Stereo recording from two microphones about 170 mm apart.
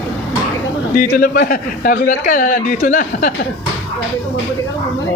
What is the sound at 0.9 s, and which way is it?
Speech, 60° left (ahead or behind).